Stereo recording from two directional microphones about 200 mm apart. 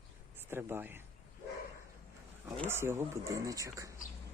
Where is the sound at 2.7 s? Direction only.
10° right (ahead or behind).